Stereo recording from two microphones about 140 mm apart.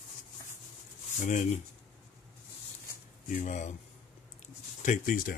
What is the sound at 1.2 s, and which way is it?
Speech, 60° left (ahead or behind).